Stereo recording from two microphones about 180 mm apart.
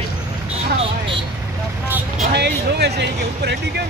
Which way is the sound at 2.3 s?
65° right (ahead or behind).